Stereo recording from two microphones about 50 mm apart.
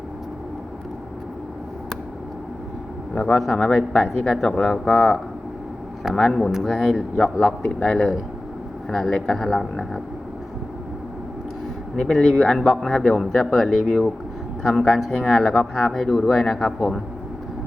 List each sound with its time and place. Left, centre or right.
3.3 s speech: centre
3.7 s speech: left
4.4 s speech: centre
11.9 s speech: centre
16.3 s speech: centre